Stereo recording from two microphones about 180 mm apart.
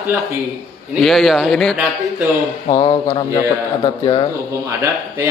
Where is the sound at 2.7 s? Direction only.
30° left (ahead or behind).